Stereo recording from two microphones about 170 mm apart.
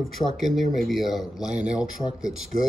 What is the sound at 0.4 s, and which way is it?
Speech, centre (ahead or behind).